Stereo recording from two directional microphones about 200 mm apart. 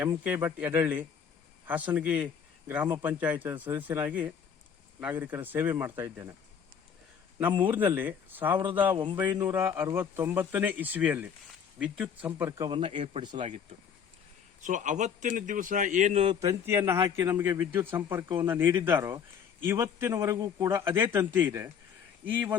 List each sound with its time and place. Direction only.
0.0 s a man's voice: 10° right (ahead or behind)
7.3 s a man's voice: 10° right (ahead or behind); by 13.5 s 25° right (ahead or behind)
14.6 s a man's voice: 40° right (ahead or behind)
16.4 s a man's voice: 15° right (ahead or behind)